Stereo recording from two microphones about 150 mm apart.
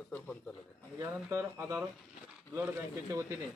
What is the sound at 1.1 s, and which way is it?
Speech, 15° right (ahead or behind).